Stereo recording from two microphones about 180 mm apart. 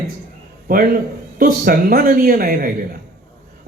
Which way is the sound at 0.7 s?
55° right (ahead or behind).